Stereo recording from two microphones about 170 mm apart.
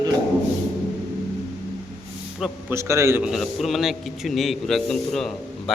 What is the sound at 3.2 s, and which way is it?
A man's voice, centre (ahead or behind).